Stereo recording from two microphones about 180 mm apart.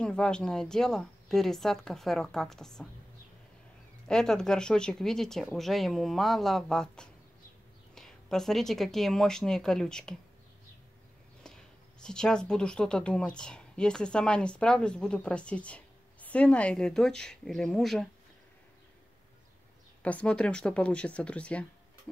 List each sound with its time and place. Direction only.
0.0 s speech: 5° left (ahead or behind)
4.1 s speech: 5° left (ahead or behind)
12.0 s speech: 5° left (ahead or behind)
20.0 s speech: 5° left (ahead or behind)